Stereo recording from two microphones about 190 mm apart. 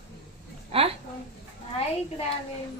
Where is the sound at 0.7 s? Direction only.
30° right (ahead or behind).